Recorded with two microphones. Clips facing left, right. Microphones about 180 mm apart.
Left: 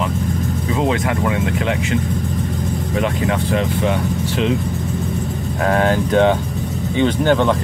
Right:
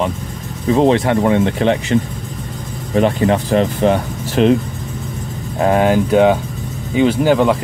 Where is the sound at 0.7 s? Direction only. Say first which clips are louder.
Right 7 dB; 30° right (ahead or behind).